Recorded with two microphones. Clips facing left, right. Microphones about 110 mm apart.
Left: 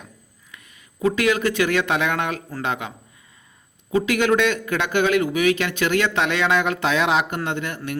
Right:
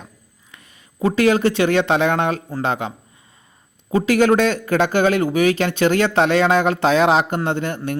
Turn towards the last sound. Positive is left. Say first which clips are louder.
# right 4 dB
turn(degrees=-30)  # may be behind; listen again after turning